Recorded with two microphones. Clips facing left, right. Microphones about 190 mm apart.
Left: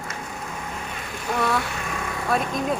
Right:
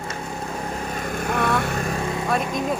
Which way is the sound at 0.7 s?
40° right (ahead or behind).